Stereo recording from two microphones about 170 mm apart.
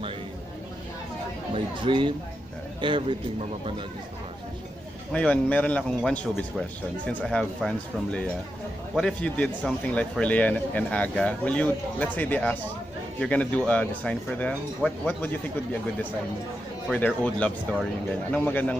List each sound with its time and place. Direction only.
1.5 s speech: 30° right (ahead or behind)
5.1 s speech: 10° left (ahead or behind)
7.1 s a man's voice: 5° left (ahead or behind)
16.9 s speech: 10° left (ahead or behind)